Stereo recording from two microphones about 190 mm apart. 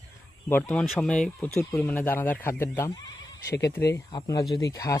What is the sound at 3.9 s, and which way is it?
Speech, 20° left (ahead or behind).